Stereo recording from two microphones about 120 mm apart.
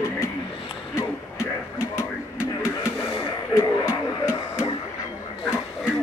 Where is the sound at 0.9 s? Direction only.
20° left (ahead or behind).